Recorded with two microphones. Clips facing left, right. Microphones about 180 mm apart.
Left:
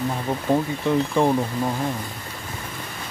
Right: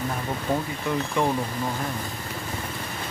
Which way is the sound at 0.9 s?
30° left (ahead or behind).